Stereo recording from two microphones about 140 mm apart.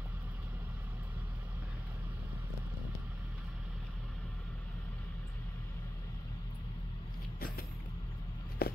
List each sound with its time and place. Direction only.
8.6 s walk: 90° left